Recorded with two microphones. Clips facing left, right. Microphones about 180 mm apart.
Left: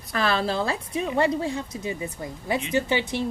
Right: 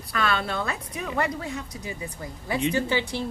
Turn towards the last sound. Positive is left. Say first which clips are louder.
# left 1 dB
turn(degrees=20)  # may be behind; listen again after turning